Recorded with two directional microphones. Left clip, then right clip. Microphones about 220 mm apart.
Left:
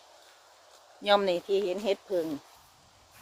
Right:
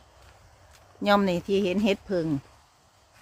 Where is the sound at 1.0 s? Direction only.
Centre (ahead or behind).